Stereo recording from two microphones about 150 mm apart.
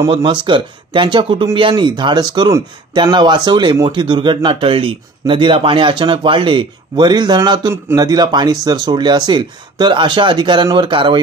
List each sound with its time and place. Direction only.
0.1 s speech: 35° right (ahead or behind)